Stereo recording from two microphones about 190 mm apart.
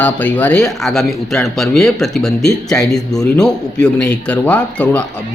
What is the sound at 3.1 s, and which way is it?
Speech, 20° left (ahead or behind).